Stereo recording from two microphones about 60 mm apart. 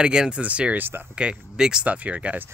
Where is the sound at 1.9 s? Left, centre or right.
Right.